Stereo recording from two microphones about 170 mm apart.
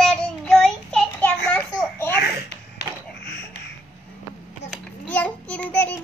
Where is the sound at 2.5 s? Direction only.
80° left.